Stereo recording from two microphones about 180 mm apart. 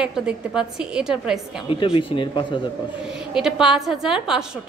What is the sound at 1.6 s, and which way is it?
Speech, 30° left (ahead or behind).